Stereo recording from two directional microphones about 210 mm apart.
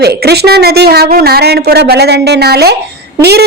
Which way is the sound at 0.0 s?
50° right (ahead or behind).